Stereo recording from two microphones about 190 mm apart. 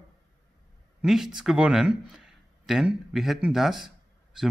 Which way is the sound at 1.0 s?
Centre (ahead or behind).